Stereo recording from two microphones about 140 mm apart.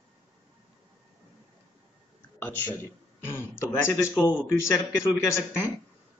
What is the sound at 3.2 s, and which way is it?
Speech, 20° left (ahead or behind).